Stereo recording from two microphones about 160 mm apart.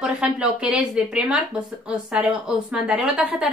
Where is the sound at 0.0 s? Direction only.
5° right (ahead or behind).